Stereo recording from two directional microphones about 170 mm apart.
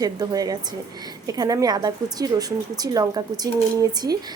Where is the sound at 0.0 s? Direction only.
20° right (ahead or behind).